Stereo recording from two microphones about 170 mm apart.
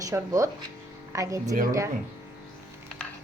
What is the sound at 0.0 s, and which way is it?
A woman's voice, 20° right (ahead or behind).